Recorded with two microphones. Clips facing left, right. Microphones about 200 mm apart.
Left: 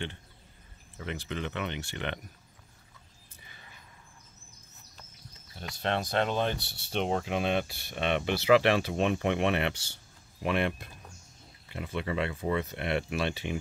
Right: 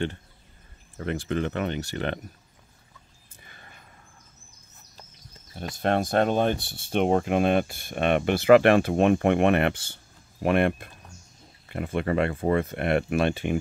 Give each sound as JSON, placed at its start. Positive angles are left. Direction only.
{"t": 0.9, "sound": "speech", "side_deg": -45}
{"t": 3.4, "sound": "a sound", "side_deg": -55}
{"t": 5.5, "sound": "speech", "side_deg": -50}